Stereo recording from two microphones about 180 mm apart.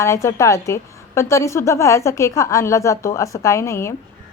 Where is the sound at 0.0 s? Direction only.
15° left (ahead or behind).